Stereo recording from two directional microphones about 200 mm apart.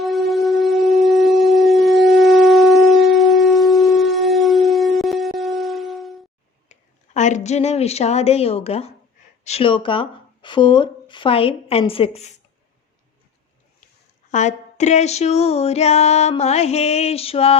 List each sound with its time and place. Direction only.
0.0 s wind instrument: centre (ahead or behind)
6.7 s a woman's voice: 35° left (ahead or behind)
14.3 s a sound: 35° left (ahead or behind)